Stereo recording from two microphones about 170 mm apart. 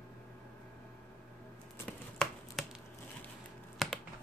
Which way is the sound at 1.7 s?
10° left (ahead or behind).